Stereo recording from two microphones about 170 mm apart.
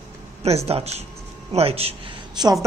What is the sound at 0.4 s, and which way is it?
Speech, 35° right (ahead or behind).